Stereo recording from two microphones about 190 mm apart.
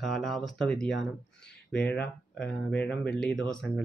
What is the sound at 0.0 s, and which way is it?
Speech, centre (ahead or behind).